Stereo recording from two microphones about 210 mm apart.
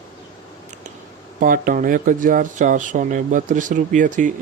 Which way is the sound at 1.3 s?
40° right (ahead or behind).